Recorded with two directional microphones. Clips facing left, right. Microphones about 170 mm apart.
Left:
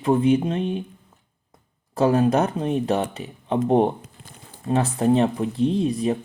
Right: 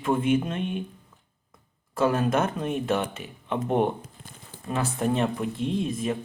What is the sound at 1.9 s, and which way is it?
Speech, 35° left (ahead or behind).